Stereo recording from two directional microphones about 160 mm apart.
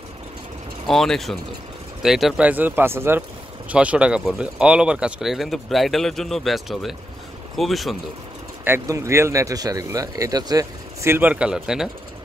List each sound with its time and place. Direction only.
0.8 s speech: centre (ahead or behind)
8.6 s speech: 15° right (ahead or behind)